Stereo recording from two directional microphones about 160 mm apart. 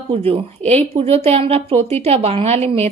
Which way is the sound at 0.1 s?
35° right (ahead or behind).